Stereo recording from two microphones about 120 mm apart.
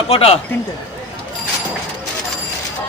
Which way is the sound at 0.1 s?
55° left (ahead or behind).